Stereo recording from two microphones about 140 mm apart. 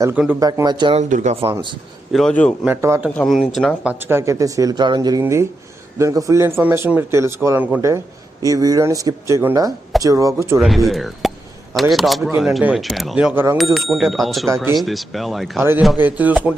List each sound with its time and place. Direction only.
0.3 s speech: 25° right (ahead or behind)
0.9 s speech: 55° right (ahead or behind)
2.1 s a man's voice: 5° left (ahead or behind)
2.6 s speech: 15° right (ahead or behind)
3.2 s speech: centre (ahead or behind)
3.8 s speech: 15° right (ahead or behind)
10.6 s speech: centre (ahead or behind)
13.3 s speech: 15° right (ahead or behind)
13.7 s speech: centre (ahead or behind)
14.5 s speech: 20° right (ahead or behind)
14.8 s speech: centre (ahead or behind)
16.0 s speech: 10° right (ahead or behind)